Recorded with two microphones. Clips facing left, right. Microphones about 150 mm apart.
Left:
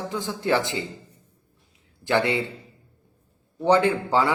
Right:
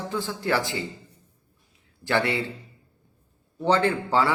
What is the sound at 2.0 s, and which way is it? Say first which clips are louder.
Speech: left 2 dB; 20° left (ahead or behind).